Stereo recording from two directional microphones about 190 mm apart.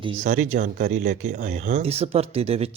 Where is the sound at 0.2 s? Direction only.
40° right (ahead or behind).